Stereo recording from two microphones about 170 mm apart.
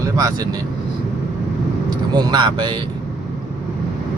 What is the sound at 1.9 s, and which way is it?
Speech, 25° right (ahead or behind).